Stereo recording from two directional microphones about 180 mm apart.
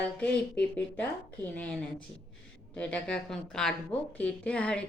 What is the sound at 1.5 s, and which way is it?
A woman's voice, 5° left (ahead or behind).